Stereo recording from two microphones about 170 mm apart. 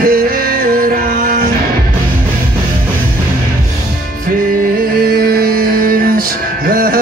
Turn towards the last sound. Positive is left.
turn(degrees=-55)  # may be behind; listen again after turning